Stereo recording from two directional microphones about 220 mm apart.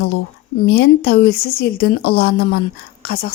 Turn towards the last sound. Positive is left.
turn(degrees=45)  # may be behind; listen again after turning